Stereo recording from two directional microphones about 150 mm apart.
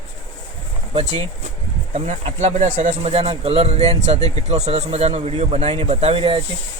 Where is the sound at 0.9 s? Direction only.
45° right (ahead or behind).